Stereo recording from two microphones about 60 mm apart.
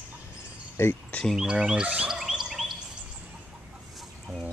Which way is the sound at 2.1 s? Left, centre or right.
Centre.